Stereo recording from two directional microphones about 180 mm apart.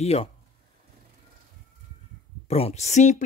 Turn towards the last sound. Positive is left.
turn(degrees=40)  # may be behind; listen again after turning